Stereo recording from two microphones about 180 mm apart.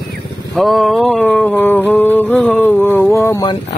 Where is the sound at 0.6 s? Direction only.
Centre (ahead or behind); by 3.5 s 15° left (ahead or behind).